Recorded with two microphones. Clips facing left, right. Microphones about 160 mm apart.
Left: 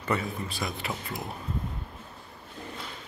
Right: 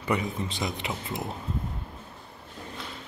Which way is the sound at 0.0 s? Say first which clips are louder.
Right 2 dB; 15° right (ahead or behind).